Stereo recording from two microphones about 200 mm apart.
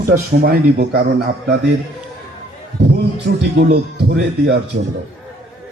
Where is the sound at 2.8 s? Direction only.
55° right (ahead or behind).